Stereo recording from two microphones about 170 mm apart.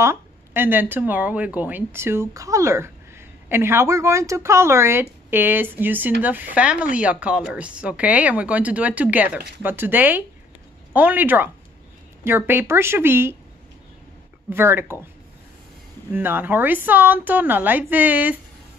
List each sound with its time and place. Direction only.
0.0 s speech: 15° right (ahead or behind)
14.5 s speech: 15° right (ahead or behind)
16.1 s speech: 10° right (ahead or behind)